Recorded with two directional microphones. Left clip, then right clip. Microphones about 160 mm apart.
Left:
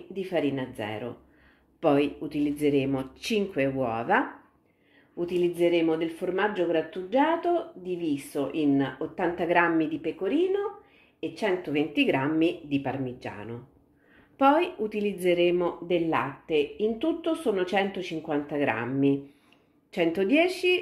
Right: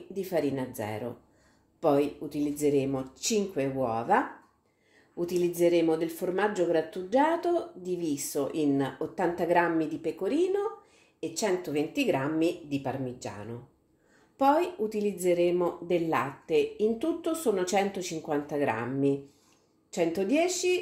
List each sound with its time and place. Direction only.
0.1 s speech: 25° right (ahead or behind)
5.1 s speech: 30° right (ahead or behind)